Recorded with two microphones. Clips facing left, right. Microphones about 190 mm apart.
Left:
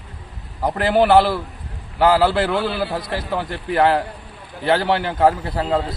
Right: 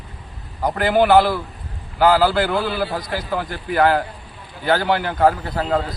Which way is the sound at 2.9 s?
25° left (ahead or behind).